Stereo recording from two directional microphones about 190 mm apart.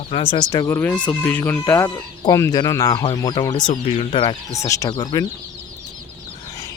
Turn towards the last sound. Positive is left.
turn(degrees=20)  # may be behind; listen again after turning